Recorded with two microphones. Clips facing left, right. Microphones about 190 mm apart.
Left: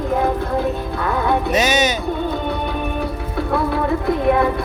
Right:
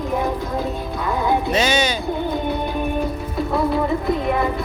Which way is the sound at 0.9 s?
60° left (ahead or behind).